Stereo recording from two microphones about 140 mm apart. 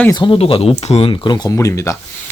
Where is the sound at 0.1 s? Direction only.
35° left (ahead or behind).